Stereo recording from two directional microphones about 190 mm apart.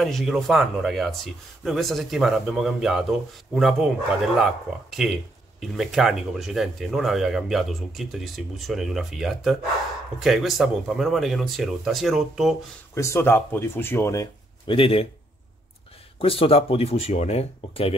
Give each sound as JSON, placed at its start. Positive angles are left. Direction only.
{"t": 0.0, "sound": "speech", "side_deg": 0}
{"t": 12.9, "sound": "speech", "side_deg": 15}
{"t": 14.8, "sound": "speech", "side_deg": 30}
{"t": 16.2, "sound": "speech", "side_deg": 30}